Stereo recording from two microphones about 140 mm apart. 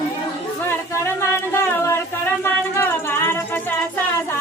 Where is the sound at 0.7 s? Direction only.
15° left (ahead or behind).